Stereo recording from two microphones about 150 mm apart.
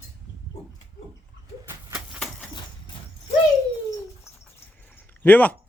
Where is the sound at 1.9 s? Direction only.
Centre (ahead or behind).